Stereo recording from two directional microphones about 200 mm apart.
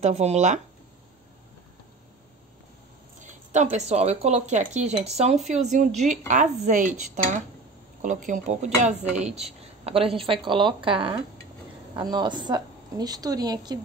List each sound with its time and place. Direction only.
0.0 s speech: 35° right (ahead or behind)
3.2 s a woman's voice: 35° right (ahead or behind); by 13.7 s 20° right (ahead or behind)